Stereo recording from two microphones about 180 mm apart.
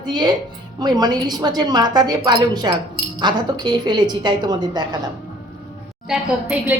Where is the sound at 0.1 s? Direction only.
25° right (ahead or behind).